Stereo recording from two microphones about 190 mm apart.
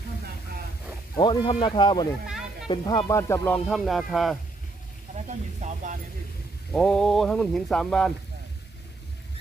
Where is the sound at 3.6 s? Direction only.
Centre (ahead or behind).